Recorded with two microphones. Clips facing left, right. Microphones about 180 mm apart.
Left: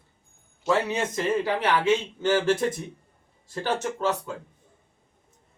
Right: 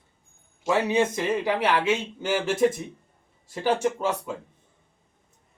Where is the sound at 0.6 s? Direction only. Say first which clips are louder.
Right 2 dB; 15° right (ahead or behind).